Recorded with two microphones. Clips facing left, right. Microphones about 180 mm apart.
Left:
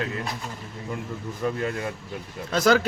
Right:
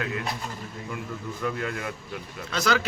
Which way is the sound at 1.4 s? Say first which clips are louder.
Left 3 dB; 30° left (ahead or behind).